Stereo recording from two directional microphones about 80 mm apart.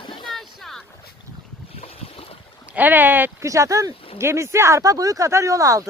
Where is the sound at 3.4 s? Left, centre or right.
Right.